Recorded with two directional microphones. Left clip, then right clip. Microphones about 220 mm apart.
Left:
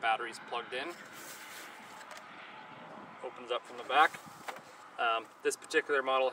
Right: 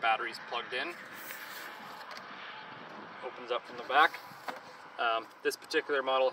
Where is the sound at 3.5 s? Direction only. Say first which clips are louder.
Right 1 dB; 5° right (ahead or behind).